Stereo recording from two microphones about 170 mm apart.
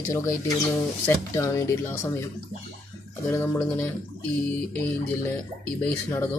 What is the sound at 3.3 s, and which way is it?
Speech, 10° left (ahead or behind).